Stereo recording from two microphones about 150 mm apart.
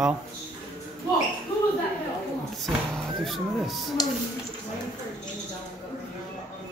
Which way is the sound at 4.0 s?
25° left (ahead or behind).